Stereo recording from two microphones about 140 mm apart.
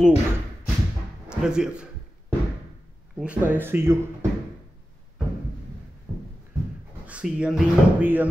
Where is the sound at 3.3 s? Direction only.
15° right (ahead or behind).